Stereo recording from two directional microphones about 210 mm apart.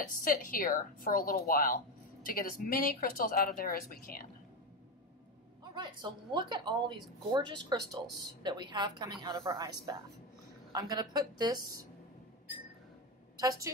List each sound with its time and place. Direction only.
0.0 s speech: 40° left (ahead or behind)
5.6 s speech: 20° right (ahead or behind)